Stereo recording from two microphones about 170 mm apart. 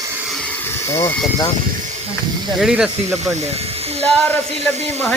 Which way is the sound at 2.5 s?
5° right (ahead or behind).